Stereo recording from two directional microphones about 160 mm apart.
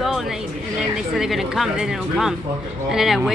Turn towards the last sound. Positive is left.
turn(degrees=0)  # may be behind; listen again after turning